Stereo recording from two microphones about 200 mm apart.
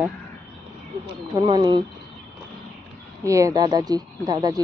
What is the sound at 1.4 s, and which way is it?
Speech, 25° right (ahead or behind).